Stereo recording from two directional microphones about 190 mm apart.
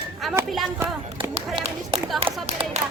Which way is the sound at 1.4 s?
30° right (ahead or behind).